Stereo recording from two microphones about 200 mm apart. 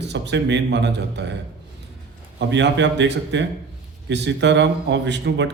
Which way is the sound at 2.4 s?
60° right (ahead or behind).